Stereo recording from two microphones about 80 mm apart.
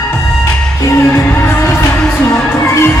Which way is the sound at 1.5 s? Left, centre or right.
Left.